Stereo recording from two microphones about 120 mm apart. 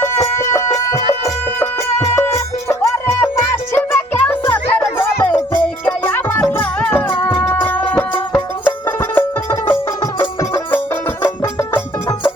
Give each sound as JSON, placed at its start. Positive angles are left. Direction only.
{"t": 0.0, "sound": "music", "side_deg": 20}